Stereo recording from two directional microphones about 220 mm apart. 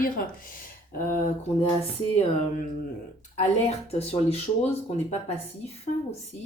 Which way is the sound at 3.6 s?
25° left (ahead or behind).